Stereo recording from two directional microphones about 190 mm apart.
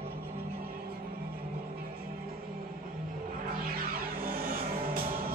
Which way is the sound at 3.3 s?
50° right (ahead or behind).